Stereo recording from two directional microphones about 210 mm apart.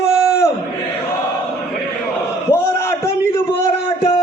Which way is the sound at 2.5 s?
10° left (ahead or behind).